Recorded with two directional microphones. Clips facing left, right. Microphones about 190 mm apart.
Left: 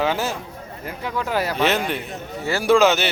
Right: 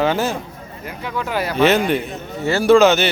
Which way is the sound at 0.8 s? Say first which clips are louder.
Right 1 dB; 35° left (ahead or behind).